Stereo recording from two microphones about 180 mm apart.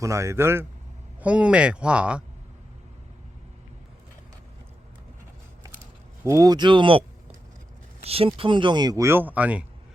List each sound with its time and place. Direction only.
0.0 s speech: 15° right (ahead or behind)
6.2 s speech: 20° right (ahead or behind)
8.0 s speech: 30° right (ahead or behind); by 9.6 s 10° right (ahead or behind)